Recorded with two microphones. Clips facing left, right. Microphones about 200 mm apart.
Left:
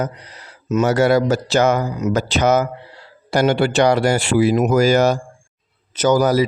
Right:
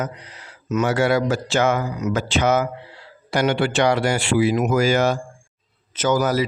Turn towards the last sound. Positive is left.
turn(degrees=35)  # may be behind; listen again after turning